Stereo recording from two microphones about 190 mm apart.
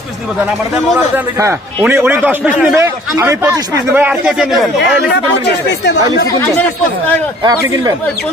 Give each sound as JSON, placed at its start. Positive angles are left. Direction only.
{"t": 0.9, "sound": "a man's voice", "side_deg": -10}
{"t": 7.4, "sound": "speech", "side_deg": -20}